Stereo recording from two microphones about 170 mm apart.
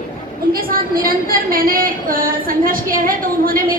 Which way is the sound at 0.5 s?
60° right (ahead or behind).